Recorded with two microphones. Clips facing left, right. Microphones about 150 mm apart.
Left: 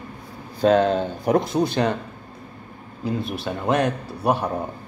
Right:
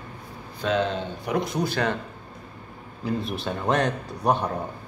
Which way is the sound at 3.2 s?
5° left (ahead or behind).